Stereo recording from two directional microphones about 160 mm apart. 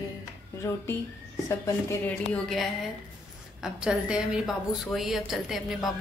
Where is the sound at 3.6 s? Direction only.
5° right (ahead or behind).